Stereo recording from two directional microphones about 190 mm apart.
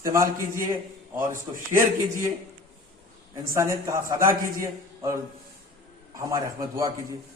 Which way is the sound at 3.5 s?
15° right (ahead or behind).